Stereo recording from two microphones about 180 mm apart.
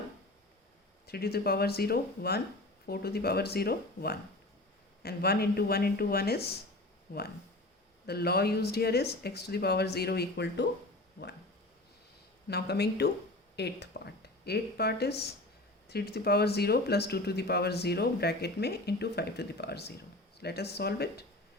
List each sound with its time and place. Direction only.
1.0 s speech: 60° left (ahead or behind)
8.0 s speech: 60° left (ahead or behind)
12.5 s speech: 65° left (ahead or behind)